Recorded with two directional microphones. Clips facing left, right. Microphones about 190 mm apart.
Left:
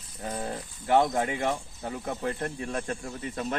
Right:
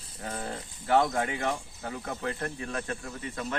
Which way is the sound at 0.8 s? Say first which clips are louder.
Left 2 dB; 15° left (ahead or behind).